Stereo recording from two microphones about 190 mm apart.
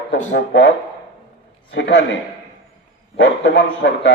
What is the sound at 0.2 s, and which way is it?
Speech, 40° left (ahead or behind).